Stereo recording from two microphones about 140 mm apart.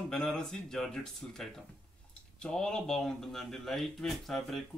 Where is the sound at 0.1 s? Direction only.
5° left (ahead or behind).